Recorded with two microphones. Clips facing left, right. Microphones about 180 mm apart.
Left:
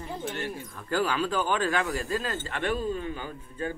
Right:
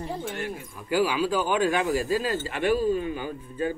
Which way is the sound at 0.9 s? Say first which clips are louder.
Right 3 dB; 10° right (ahead or behind).